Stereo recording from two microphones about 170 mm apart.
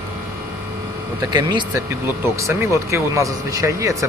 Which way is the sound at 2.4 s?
15° right (ahead or behind).